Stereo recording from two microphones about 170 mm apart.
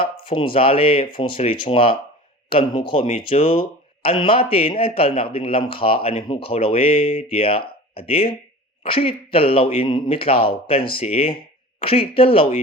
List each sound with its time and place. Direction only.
0.0 s speech: 30° left (ahead or behind)